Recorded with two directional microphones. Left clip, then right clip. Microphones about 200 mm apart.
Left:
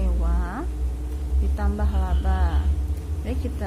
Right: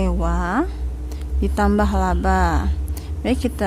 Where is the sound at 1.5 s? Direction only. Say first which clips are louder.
Right 13 dB; 55° right (ahead or behind).